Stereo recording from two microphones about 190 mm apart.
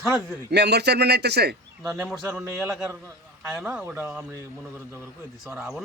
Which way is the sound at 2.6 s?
Centre (ahead or behind).